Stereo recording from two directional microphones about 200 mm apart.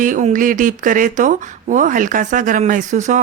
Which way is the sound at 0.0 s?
40° right (ahead or behind).